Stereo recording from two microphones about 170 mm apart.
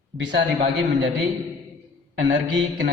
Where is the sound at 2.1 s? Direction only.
90° right.